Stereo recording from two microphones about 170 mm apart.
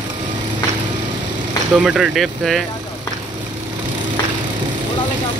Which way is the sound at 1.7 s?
5° right (ahead or behind).